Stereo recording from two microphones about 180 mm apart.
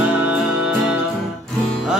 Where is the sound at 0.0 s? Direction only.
5° right (ahead or behind).